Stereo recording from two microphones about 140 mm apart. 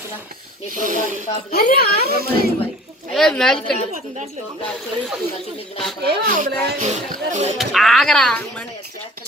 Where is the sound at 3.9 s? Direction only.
60° right (ahead or behind).